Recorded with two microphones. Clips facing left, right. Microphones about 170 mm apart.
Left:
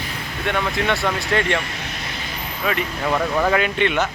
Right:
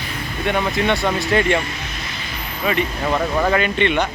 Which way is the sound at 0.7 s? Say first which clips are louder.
Right 2 dB; centre (ahead or behind).